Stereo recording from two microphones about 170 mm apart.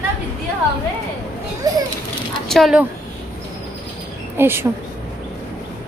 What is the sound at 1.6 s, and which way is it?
Children playing, 20° right (ahead or behind).